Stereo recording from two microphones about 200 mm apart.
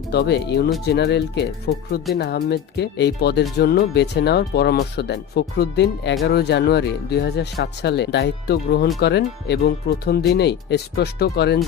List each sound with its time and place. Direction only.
0.1 s speech: 55° left (ahead or behind)